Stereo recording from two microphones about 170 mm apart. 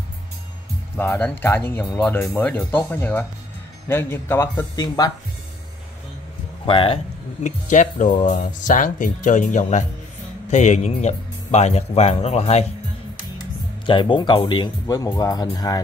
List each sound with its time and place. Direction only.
0.9 s speech: 10° left (ahead or behind)
6.6 s speech: 30° left (ahead or behind)
7.4 s speech: 45° left (ahead or behind)
13.8 s speech: 30° left (ahead or behind)